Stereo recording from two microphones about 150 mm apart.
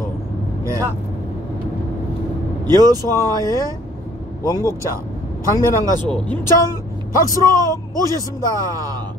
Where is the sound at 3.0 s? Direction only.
20° left (ahead or behind).